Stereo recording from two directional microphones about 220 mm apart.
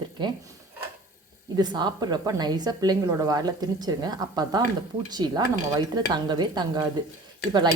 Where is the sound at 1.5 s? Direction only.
20° right (ahead or behind).